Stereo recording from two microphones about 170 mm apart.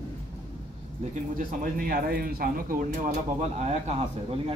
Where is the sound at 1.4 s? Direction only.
55° right (ahead or behind).